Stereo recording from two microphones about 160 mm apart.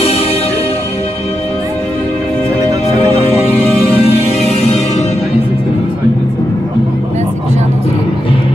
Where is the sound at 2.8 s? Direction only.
40° left (ahead or behind).